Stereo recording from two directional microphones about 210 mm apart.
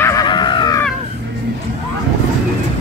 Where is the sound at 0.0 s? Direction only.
15° left (ahead or behind).